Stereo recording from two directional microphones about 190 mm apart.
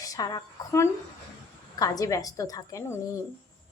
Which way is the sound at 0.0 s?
20° left (ahead or behind).